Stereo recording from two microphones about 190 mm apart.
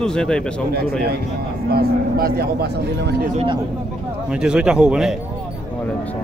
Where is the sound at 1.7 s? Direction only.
50° right (ahead or behind).